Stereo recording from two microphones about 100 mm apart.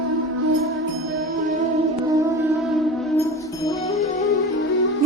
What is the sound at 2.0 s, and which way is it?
Music, 35° right (ahead or behind).